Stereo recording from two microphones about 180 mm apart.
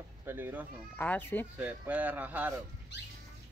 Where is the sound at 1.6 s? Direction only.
10° right (ahead or behind).